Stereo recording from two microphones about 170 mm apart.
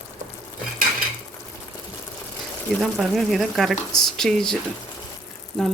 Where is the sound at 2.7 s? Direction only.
Centre (ahead or behind).